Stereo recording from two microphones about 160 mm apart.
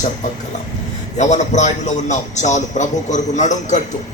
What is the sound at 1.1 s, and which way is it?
A man's voice, 50° left (ahead or behind).